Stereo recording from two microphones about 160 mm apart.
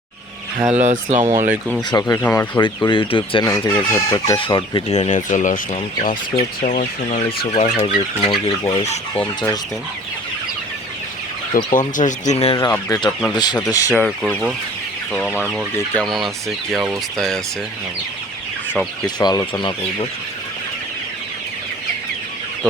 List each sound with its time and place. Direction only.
0.8 s speech: 50° right (ahead or behind)
1.4 s speech: 10° right (ahead or behind)
1.9 s speech: 25° left (ahead or behind)
2.6 s speech: 30° left (ahead or behind)
5.1 s speech: 50° left (ahead or behind)
7.3 s speech: 35° left (ahead or behind)
8.3 s speech: 25° left (ahead or behind)
11.5 s speech: 60° left (ahead or behind); by 12.5 s 45° left (ahead or behind)
12.5 s speech: 20° left (ahead or behind)
13.9 s speech: 5° right (ahead or behind)
15.5 s speech: centre (ahead or behind)
19.0 s speech: 25° left (ahead or behind)